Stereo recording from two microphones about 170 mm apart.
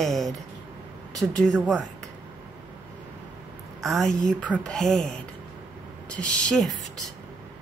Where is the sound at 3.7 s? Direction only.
Centre (ahead or behind).